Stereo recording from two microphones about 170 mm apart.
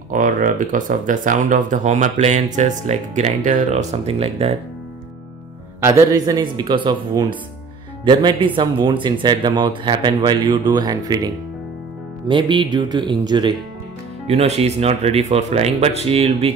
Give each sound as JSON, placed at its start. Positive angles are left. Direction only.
{"t": 0.1, "sound": "speech", "side_deg": -50}
{"t": 5.9, "sound": "speech", "side_deg": -20}
{"t": 14.2, "sound": "speech", "side_deg": -40}